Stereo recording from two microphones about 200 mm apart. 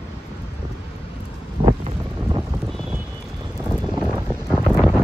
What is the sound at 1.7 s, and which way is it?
Wind noise, 25° right (ahead or behind).